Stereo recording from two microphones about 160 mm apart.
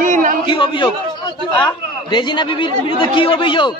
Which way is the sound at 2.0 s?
30° left (ahead or behind).